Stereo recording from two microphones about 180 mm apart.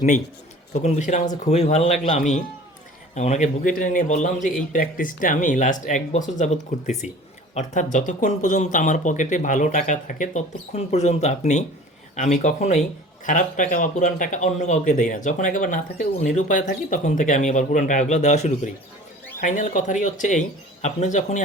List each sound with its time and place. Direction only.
0.7 s speech: 40° left (ahead or behind)